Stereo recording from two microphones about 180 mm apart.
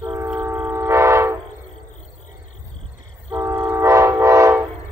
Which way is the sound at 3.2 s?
15° right (ahead or behind).